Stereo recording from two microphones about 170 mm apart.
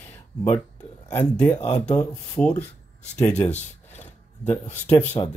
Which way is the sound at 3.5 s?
40° left (ahead or behind).